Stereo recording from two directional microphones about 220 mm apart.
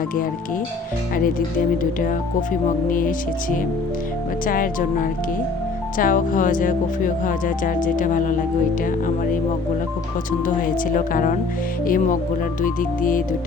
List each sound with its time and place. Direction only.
1.8 s speech: 40° left (ahead or behind)
4.4 s speech: 40° left (ahead or behind)
10.9 s speech: 35° left (ahead or behind)